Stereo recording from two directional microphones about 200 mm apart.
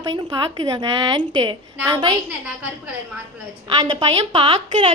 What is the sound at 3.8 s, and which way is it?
A woman's voice, 25° right (ahead or behind).